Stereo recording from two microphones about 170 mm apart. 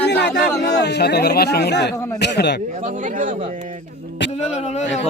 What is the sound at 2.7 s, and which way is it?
Speech, 45° right (ahead or behind).